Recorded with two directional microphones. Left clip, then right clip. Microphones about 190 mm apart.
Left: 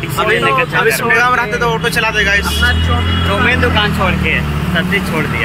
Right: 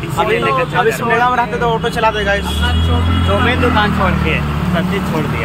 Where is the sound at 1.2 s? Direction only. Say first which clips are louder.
Left 1 dB; 15° right (ahead or behind).